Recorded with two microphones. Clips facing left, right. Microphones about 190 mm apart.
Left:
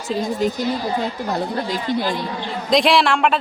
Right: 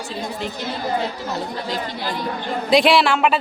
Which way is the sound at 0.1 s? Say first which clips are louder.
Left 10 dB; 40° left (ahead or behind).